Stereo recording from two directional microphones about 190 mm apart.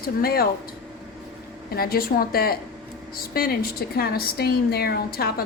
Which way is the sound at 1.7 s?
50° left (ahead or behind).